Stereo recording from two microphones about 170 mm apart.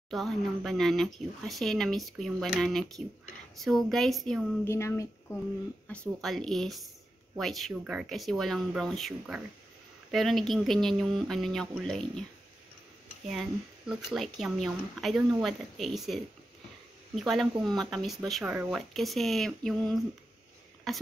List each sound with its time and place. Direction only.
0.1 s speech: centre (ahead or behind)
4.6 s speech: 15° left (ahead or behind)
5.9 s speech: 5° left (ahead or behind)
13.3 s speech: centre (ahead or behind)